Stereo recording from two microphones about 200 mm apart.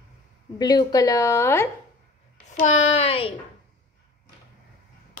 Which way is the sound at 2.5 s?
35° left (ahead or behind).